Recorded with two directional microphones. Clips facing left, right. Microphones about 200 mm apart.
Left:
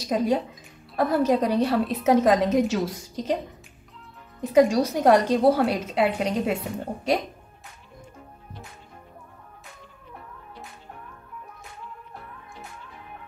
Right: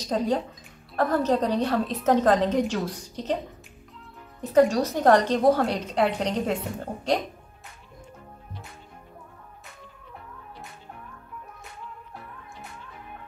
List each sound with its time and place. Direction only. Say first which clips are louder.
0.0 s a woman's voice: left 2 dB; 10° left (ahead or behind)
4.4 s a woman's voice: left 1 dB; 10° left (ahead or behind)